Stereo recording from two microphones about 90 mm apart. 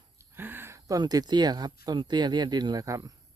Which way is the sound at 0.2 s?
25° right (ahead or behind).